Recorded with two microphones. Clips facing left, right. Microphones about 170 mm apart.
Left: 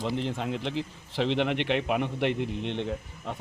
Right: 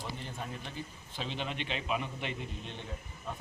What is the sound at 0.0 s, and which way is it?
A man's voice, 85° left.